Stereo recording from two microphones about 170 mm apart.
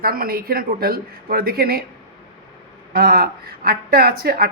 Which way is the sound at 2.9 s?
60° right (ahead or behind).